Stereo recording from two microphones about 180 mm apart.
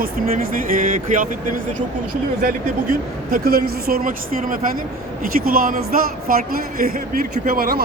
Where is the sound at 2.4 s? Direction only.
50° right (ahead or behind).